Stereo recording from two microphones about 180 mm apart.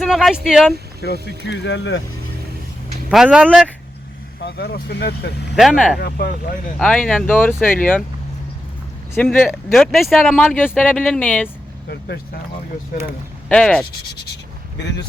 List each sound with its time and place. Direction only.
0.0 s speech: centre (ahead or behind)
1.0 s speech: 65° left (ahead or behind)
3.1 s speech: 5° right (ahead or behind)
4.4 s speech: 70° left (ahead or behind)
5.5 s speech: centre (ahead or behind)
6.0 s speech: 60° left (ahead or behind)
6.7 s speech: 5° left (ahead or behind)
9.5 s speech: centre (ahead or behind)
11.9 s speech: 65° left (ahead or behind)
13.5 s speech: 5° left (ahead or behind)
14.8 s speech: 75° left (ahead or behind)